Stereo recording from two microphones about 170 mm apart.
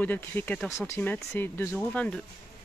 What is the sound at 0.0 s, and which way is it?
Speech, 10° left (ahead or behind).